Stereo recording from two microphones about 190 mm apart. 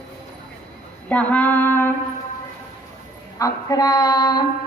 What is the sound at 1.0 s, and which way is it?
Female singing, 5° left (ahead or behind).